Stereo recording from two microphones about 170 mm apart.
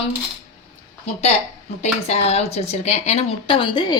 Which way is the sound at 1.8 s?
40° left (ahead or behind).